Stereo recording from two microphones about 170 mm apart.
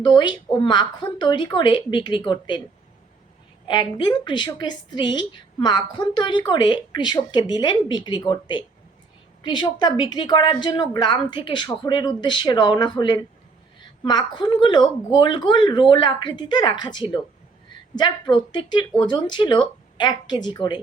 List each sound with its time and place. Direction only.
0.0 s a woman's voice: 25° left (ahead or behind)
3.7 s a woman's voice: 25° left (ahead or behind)